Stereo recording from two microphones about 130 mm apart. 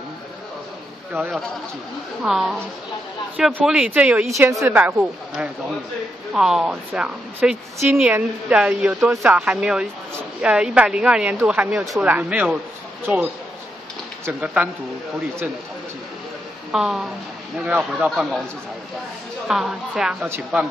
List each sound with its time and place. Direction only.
2.2 s a woman's voice: centre (ahead or behind)
4.4 s a woman's voice: 20° right (ahead or behind)
6.3 s speech: 5° right (ahead or behind)
16.7 s a woman's voice: 5° right (ahead or behind)
19.4 s a woman's voice: 5° right (ahead or behind)
20.2 s speech: 15° right (ahead or behind)